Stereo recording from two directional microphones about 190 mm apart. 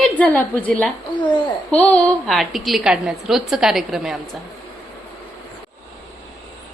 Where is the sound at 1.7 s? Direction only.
5° left (ahead or behind).